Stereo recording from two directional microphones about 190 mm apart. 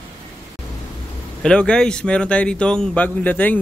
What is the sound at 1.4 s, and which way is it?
Speech, 5° left (ahead or behind).